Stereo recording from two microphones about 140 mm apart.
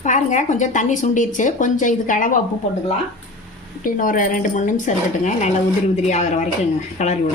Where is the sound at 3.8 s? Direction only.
80° left; by 7.2 s 55° left (ahead or behind).